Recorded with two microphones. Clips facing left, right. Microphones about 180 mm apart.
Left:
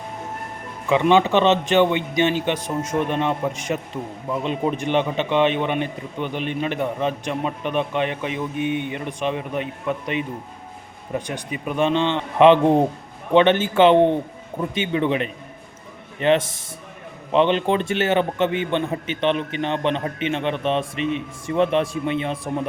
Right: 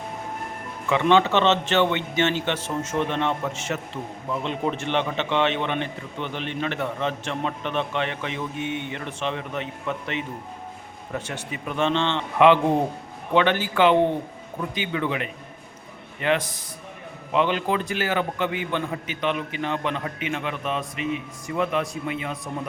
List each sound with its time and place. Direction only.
0.9 s a man's voice: 15° left (ahead or behind)